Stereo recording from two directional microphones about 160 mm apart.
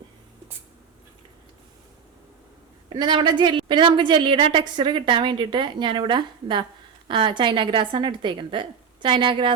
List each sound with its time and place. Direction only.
2.9 s a woman's voice: 30° right (ahead or behind)